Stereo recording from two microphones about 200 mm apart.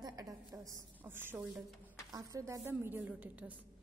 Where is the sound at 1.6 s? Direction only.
Centre (ahead or behind).